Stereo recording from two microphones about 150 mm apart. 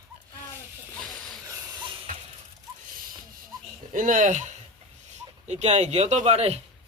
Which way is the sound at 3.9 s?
60° right (ahead or behind).